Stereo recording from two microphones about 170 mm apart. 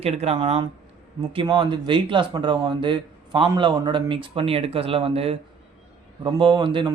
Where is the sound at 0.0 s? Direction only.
40° right (ahead or behind).